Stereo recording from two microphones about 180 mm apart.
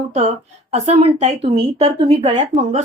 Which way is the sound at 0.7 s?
35° right (ahead or behind).